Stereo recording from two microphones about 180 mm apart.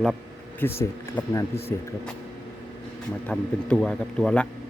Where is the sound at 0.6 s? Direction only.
10° left (ahead or behind).